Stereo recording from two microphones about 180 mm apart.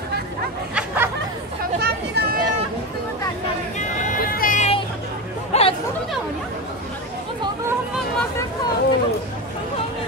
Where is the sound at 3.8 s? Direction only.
50° left (ahead or behind).